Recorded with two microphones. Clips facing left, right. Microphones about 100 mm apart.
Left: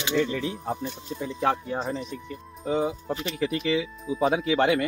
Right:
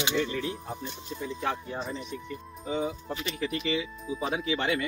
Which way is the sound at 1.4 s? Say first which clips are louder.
Left 8 dB; 90° left.